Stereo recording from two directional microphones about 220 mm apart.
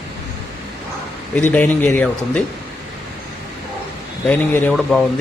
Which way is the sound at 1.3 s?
5° left (ahead or behind).